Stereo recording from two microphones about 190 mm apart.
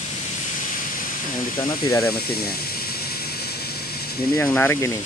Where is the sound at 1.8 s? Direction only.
15° left (ahead or behind).